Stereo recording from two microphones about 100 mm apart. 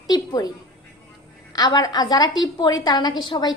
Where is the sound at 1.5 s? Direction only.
40° left (ahead or behind).